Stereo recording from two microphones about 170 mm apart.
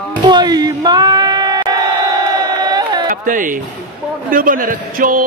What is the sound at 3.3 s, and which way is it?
Speech, 50° right (ahead or behind).